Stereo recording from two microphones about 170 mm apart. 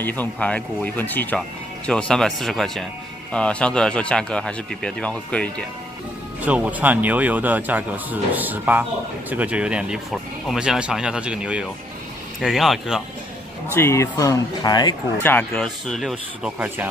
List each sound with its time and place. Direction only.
0.0 s speech: 10° left (ahead or behind)
6.4 s speech: 10° right (ahead or behind)
13.7 s speech: 15° left (ahead or behind)
15.2 s speech: 5° left (ahead or behind)
16.5 s speech: 10° right (ahead or behind)